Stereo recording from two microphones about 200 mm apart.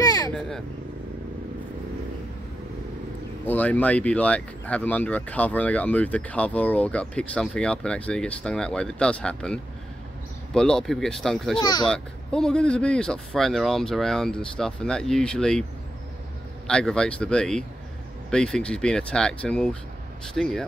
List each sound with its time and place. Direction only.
0.0 s vehicle: 15° left (ahead or behind)
3.4 s speech: 10° left (ahead or behind)
11.6 s speech: 20° left (ahead or behind)
11.9 s speech: 5° left (ahead or behind)
16.6 s speech: 5° left (ahead or behind)